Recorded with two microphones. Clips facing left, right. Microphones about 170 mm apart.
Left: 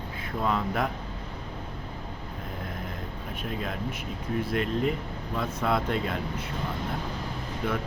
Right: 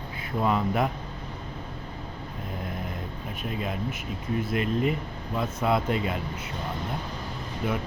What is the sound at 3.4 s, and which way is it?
Speech, 5° right (ahead or behind).